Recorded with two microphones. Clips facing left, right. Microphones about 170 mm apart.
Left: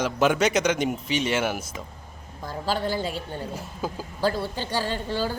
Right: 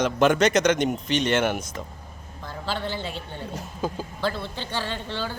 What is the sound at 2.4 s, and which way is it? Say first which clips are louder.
Speech: left 3 dB; 40° left (ahead or behind).